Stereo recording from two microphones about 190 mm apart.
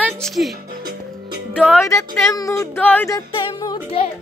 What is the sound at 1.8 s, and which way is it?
Speech, 15° left (ahead or behind).